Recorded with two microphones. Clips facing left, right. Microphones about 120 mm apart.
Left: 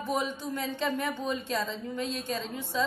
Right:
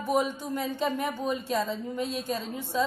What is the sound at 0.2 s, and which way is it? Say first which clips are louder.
Music: right 3 dB; 10° right (ahead or behind).